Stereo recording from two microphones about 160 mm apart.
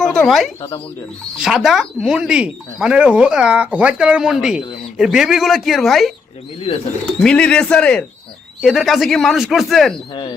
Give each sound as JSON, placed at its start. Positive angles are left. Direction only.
{"t": 0.0, "sound": "speech", "side_deg": 5}
{"t": 7.2, "sound": "speech", "side_deg": 5}